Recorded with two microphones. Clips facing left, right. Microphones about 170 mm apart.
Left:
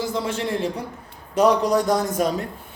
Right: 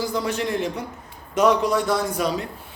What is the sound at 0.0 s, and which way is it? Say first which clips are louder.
A man's voice: even; 25° left (ahead or behind).